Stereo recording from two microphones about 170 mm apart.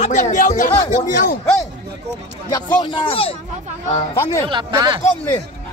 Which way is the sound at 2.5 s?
25° left (ahead or behind).